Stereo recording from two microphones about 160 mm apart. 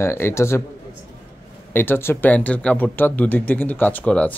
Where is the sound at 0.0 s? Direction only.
15° left (ahead or behind).